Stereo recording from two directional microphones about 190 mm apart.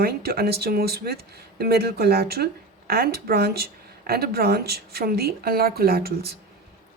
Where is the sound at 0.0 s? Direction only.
55° right (ahead or behind).